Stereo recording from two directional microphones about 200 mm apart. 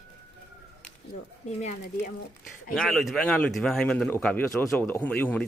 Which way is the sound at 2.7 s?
Centre (ahead or behind).